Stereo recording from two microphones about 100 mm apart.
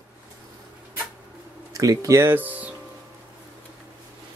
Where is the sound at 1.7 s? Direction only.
35° right (ahead or behind); by 2.7 s 15° right (ahead or behind).